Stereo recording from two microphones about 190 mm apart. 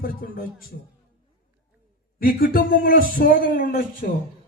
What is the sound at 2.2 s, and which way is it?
A man's voice, 50° left (ahead or behind).